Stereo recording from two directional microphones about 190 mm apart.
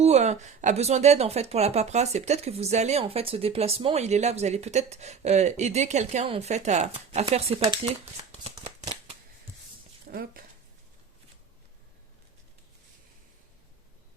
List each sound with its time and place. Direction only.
0.0 s speech: 35° right (ahead or behind)
7.6 s shuffling cards: 25° right (ahead or behind)
10.1 s speech: 50° right (ahead or behind)